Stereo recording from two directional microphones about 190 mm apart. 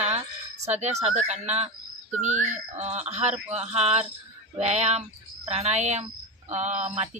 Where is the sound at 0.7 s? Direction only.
35° right (ahead or behind).